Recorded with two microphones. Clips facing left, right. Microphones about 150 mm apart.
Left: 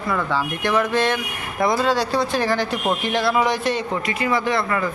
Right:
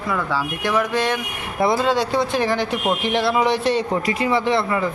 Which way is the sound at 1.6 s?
25° right (ahead or behind).